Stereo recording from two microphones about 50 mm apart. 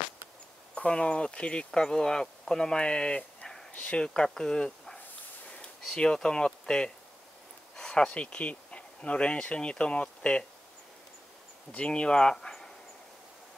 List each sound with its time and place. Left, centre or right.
0.7 s speech: centre
3.7 s speech: left
5.9 s speech: centre
11.7 s speech: left